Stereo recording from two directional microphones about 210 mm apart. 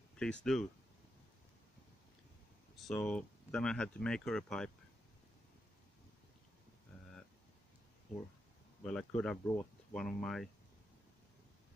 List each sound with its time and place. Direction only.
0.2 s speech: 5° left (ahead or behind)
2.9 s speech: 10° left (ahead or behind)
8.8 s speech: 5° left (ahead or behind)